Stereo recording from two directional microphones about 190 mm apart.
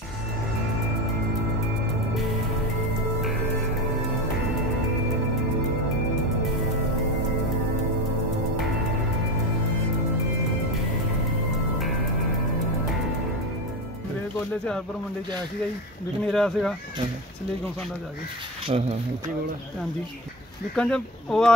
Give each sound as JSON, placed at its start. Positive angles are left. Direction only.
{"t": 16.3, "sound": "speech", "side_deg": 0}
{"t": 18.7, "sound": "speech", "side_deg": -35}
{"t": 20.7, "sound": "speech", "side_deg": 5}